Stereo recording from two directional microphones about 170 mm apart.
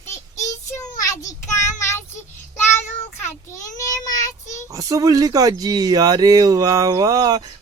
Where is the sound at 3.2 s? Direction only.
20° left (ahead or behind).